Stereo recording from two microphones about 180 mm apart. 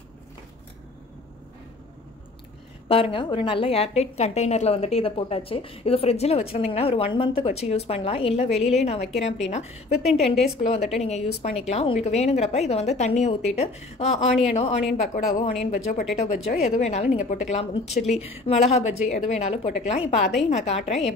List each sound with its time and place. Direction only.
2.9 s a woman's voice: 30° left (ahead or behind)